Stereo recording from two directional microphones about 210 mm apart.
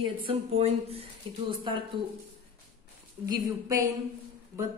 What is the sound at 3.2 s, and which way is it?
Speech, 15° right (ahead or behind).